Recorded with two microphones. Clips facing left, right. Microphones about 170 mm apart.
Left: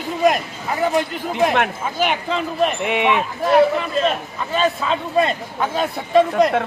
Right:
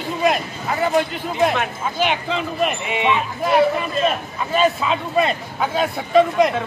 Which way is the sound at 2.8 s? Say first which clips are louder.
Left 2 dB; 65° left (ahead or behind).